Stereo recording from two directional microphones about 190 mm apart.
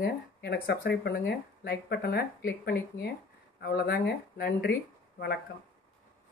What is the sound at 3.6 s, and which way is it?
Speech, 60° left (ahead or behind).